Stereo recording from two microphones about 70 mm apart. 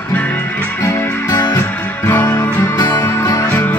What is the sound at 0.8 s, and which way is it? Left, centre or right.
Music, left.